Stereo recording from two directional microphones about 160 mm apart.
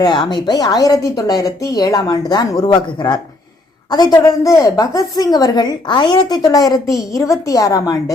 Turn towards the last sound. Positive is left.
turn(degrees=20)  # may be behind; listen again after turning